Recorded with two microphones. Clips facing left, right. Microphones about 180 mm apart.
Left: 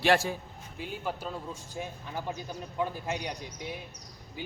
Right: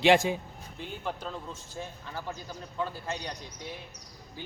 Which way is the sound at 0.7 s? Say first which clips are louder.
Left 1 dB; 5° left (ahead or behind).